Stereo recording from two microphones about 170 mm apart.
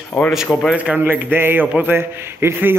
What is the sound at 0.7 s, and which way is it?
Speech, 10° right (ahead or behind).